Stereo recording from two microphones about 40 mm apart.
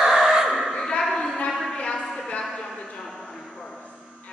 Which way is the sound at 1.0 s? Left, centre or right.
Centre.